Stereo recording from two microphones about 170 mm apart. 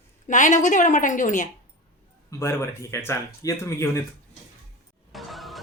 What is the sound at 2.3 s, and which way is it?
Speech, 15° left (ahead or behind).